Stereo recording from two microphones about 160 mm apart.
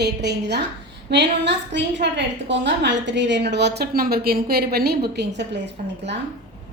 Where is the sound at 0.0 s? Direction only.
90° right.